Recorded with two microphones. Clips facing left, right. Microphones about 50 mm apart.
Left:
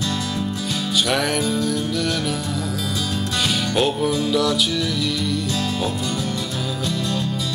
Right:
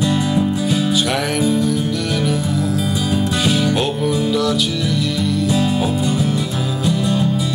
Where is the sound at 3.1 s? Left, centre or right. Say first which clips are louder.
Right 5 dB; centre.